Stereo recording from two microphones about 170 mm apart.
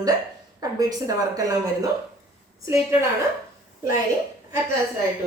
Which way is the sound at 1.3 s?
20° right (ahead or behind).